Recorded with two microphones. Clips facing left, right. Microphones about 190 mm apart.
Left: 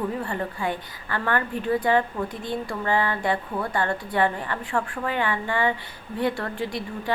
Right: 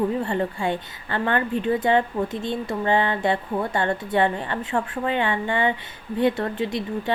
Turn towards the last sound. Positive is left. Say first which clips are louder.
# right 3 dB
turn(degrees=-20)  # may be behind; listen again after turning